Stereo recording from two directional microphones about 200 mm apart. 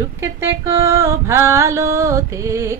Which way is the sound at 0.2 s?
15° right (ahead or behind).